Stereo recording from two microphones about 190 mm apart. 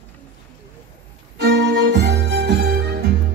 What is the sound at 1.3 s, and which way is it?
Music, 65° right (ahead or behind).